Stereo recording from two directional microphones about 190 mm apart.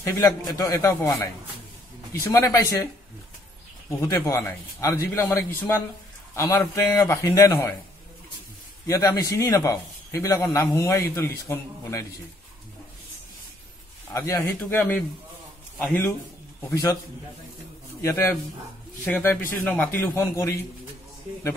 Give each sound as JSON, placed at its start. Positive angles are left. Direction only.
{"t": 0.0, "sound": "a man's voice", "side_deg": 15}
{"t": 4.1, "sound": "a man's voice", "side_deg": 15}
{"t": 8.8, "sound": "a man's voice", "side_deg": 15}
{"t": 14.1, "sound": "a man's voice", "side_deg": 15}
{"t": 16.7, "sound": "a man's voice", "side_deg": 20}
{"t": 18.0, "sound": "a man's voice", "side_deg": 15}